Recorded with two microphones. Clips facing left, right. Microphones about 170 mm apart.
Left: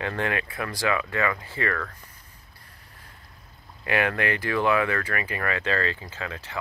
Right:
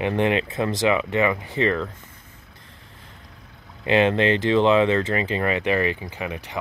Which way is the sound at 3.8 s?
20° right (ahead or behind).